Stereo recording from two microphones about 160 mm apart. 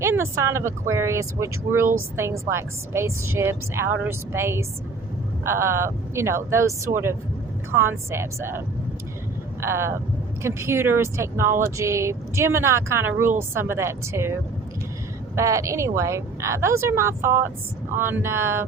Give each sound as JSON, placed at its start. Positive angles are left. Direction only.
{"t": 0.0, "sound": "speech", "side_deg": -15}
{"t": 15.4, "sound": "speech", "side_deg": -20}